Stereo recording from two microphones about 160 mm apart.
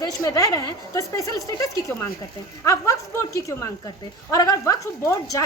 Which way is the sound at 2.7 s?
20° left (ahead or behind).